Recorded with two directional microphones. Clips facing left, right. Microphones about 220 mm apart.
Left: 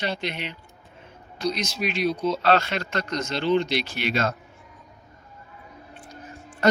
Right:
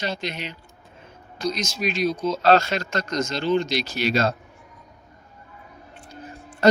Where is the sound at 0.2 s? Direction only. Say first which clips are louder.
Even; 40° right (ahead or behind).